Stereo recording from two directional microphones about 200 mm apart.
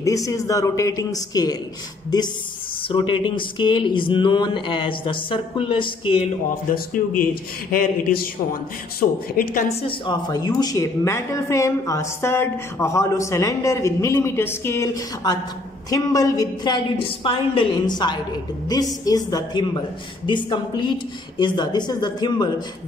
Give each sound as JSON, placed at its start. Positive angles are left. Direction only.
{"t": 0.0, "sound": "speech", "side_deg": 15}
{"t": 2.9, "sound": "speech", "side_deg": 25}
{"t": 6.5, "sound": "speech", "side_deg": 45}
{"t": 9.4, "sound": "speech", "side_deg": 40}